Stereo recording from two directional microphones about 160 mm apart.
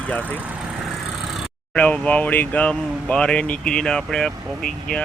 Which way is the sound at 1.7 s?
5° left (ahead or behind).